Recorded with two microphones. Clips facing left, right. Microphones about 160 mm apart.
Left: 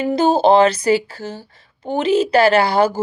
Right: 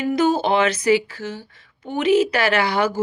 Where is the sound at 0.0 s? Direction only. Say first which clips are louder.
Left 4 dB; 30° left (ahead or behind).